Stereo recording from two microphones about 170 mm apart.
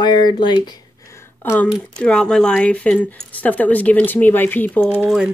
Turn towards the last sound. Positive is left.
turn(degrees=-10)  # may be behind; listen again after turning